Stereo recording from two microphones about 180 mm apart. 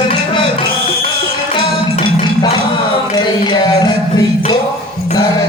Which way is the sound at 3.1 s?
25° left (ahead or behind).